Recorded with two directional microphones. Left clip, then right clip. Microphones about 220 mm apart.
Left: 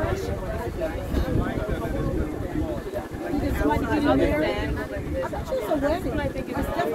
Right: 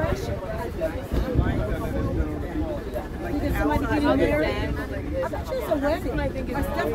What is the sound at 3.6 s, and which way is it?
Chatter, 20° right (ahead or behind).